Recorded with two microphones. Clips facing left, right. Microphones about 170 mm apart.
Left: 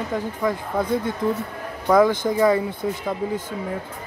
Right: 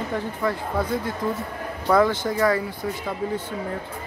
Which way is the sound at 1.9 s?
15° left (ahead or behind).